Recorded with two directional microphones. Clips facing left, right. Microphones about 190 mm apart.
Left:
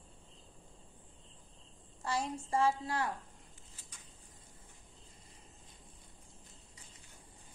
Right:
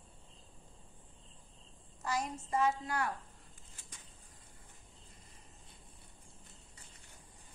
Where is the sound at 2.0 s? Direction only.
30° left (ahead or behind).